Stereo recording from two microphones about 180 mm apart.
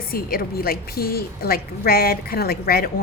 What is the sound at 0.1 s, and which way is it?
A woman's voice, 55° left (ahead or behind).